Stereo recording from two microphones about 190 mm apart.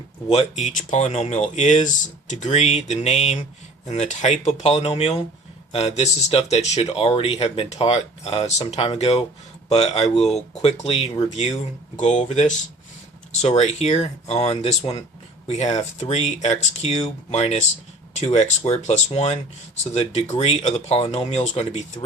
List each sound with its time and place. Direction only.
0.3 s speech: 35° left (ahead or behind)